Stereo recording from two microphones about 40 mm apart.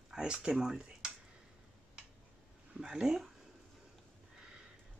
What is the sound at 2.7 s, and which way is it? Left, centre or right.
Speech, centre.